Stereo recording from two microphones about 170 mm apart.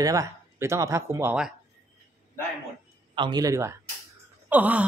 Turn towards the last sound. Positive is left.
turn(degrees=-10)  # may be behind; listen again after turning